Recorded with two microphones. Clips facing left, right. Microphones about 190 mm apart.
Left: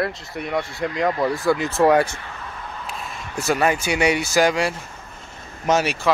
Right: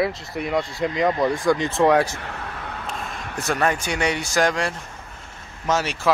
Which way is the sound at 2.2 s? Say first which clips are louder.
Right 3 dB; 70° right (ahead or behind).